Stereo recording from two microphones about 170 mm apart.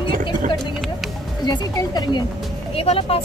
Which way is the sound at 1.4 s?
25° left (ahead or behind).